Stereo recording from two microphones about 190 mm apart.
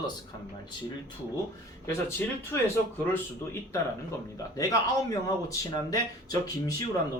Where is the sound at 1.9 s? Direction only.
10° left (ahead or behind).